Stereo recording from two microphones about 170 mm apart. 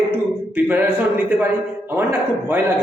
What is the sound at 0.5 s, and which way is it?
A man's voice, 10° right (ahead or behind).